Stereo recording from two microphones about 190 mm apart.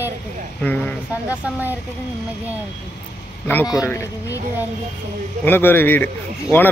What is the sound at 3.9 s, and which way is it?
Speech, 15° left (ahead or behind).